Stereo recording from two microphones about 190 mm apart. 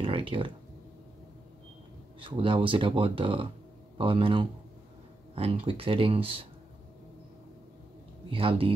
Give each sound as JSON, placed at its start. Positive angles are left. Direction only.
{"t": 0.0, "sound": "a sound", "side_deg": -25}
{"t": 2.1, "sound": "speech", "side_deg": -25}
{"t": 8.3, "sound": "speech", "side_deg": -30}